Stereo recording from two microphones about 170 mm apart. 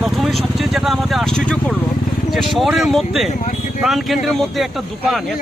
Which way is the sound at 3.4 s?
50° left (ahead or behind).